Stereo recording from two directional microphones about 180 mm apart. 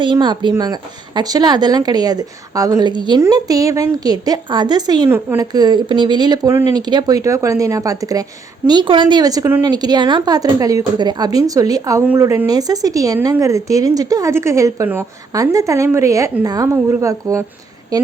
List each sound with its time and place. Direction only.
0.0 s a woman's voice: 25° right (ahead or behind)